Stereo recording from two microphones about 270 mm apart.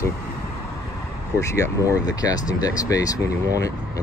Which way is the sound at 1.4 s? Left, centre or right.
Centre.